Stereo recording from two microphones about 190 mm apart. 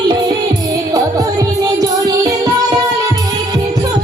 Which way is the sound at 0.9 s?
20° right (ahead or behind).